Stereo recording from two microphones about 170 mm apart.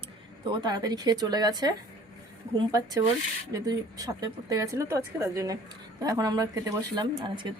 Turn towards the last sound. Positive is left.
turn(degrees=-25)  # may be behind; listen again after turning